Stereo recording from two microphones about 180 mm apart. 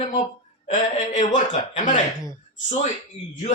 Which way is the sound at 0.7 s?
45° left (ahead or behind).